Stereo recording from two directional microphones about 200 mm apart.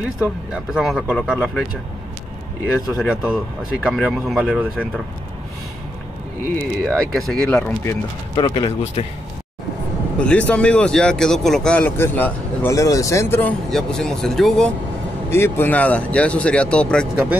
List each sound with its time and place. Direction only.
0.0 s speech: 5° right (ahead or behind)
2.9 s speech: 5° right (ahead or behind)
6.5 s speech: 5° left (ahead or behind)
8.4 s speech: 25° left (ahead or behind)
10.1 s speech: 5° left (ahead or behind)
15.2 s speech: 15° left (ahead or behind)